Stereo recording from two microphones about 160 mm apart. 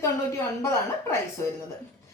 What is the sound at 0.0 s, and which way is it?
A woman's voice, 15° left (ahead or behind).